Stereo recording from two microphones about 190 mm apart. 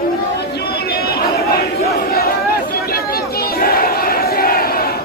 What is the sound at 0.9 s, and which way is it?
Chatter, 55° left (ahead or behind).